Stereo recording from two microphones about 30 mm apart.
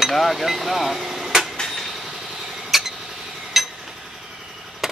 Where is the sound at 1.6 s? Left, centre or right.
Centre.